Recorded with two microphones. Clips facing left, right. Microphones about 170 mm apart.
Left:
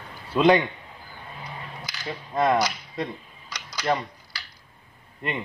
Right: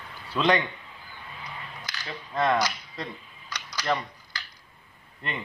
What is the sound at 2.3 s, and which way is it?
Speech, 20° left (ahead or behind).